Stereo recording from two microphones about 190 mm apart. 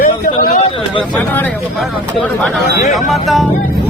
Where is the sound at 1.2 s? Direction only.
10° left (ahead or behind).